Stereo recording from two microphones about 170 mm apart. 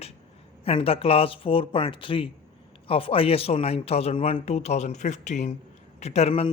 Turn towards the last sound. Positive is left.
turn(degrees=35)  # may be behind; listen again after turning